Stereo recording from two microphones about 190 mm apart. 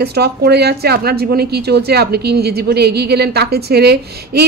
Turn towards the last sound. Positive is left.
turn(degrees=-60)  # may be behind; listen again after turning